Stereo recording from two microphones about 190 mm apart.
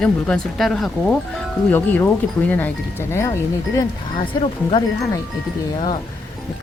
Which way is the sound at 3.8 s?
25° left (ahead or behind).